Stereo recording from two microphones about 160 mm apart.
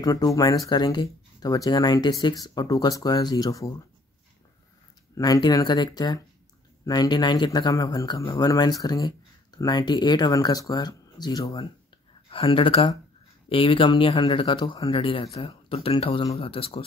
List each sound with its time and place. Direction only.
0.0 s speech: 20° left (ahead or behind)
5.1 s speech: 25° left (ahead or behind)
12.3 s speech: 35° left (ahead or behind)